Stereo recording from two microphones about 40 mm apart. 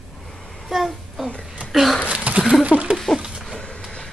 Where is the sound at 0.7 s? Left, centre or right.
Centre.